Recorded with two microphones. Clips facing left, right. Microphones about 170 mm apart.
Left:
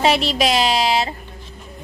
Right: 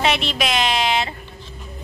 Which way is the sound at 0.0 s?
35° left (ahead or behind).